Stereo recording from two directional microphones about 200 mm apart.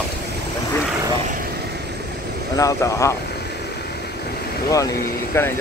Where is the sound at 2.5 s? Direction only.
15° left (ahead or behind).